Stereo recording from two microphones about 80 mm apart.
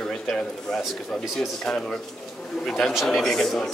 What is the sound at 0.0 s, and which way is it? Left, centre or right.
A man's voice, centre.